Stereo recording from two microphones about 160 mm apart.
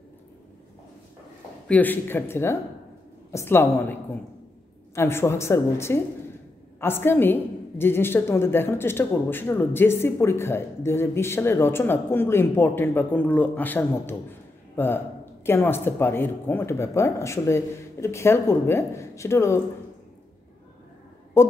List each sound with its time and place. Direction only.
1.7 s a woman's voice: 10° left (ahead or behind)